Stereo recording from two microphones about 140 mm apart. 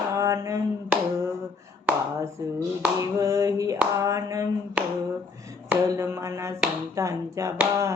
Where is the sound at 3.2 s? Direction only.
20° right (ahead or behind).